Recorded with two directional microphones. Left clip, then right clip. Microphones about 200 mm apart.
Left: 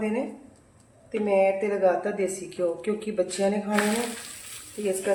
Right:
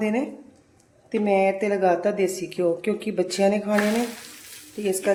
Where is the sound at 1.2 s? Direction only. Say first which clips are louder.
Right 1 dB; 50° right (ahead or behind).